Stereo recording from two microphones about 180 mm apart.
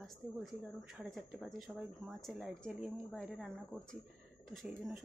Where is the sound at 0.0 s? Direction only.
Centre (ahead or behind).